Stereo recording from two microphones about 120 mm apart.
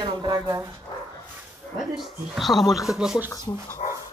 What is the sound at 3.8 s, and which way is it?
Dog, 70° left (ahead or behind).